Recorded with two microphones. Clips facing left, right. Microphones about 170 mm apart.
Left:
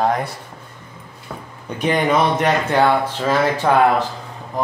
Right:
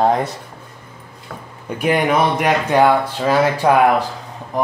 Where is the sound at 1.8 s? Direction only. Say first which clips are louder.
Right 1 dB; 10° right (ahead or behind).